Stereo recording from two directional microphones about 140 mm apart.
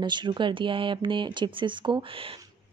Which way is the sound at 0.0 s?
35° right (ahead or behind).